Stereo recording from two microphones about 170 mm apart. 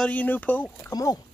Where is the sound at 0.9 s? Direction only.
20° left (ahead or behind).